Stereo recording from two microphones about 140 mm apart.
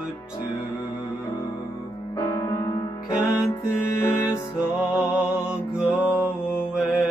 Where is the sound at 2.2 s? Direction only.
25° left (ahead or behind).